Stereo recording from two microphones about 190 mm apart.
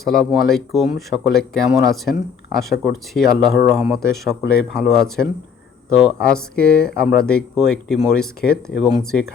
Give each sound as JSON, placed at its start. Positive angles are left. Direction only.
{"t": 0.0, "sound": "speech", "side_deg": 0}